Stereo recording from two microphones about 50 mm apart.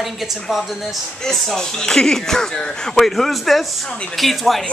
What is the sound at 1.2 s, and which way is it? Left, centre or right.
A woman's voice, centre.